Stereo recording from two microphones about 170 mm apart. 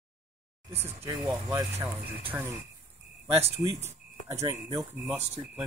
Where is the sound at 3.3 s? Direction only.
35° right (ahead or behind).